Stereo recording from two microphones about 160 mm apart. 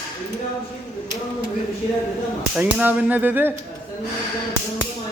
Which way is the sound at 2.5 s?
10° right (ahead or behind).